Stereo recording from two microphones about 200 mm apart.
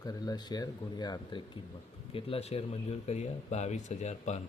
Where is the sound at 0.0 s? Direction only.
20° left (ahead or behind).